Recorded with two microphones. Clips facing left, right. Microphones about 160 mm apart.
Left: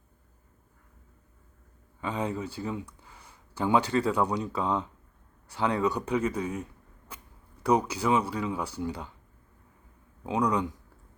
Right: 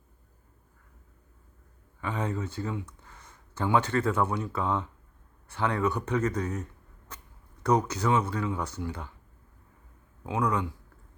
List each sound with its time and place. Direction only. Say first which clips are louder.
2.0 s speech: left 1 dB; 15° left (ahead or behind)
10.2 s speech: left 2 dB; 15° left (ahead or behind)